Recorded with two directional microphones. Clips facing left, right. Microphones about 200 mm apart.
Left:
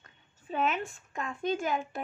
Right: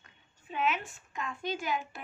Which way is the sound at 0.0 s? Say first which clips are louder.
Left 4 dB; 45° left (ahead or behind).